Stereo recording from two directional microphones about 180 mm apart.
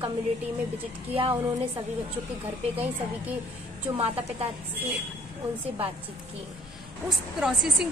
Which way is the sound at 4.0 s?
30° right (ahead or behind).